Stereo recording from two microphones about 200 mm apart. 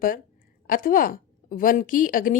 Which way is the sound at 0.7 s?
45° left (ahead or behind).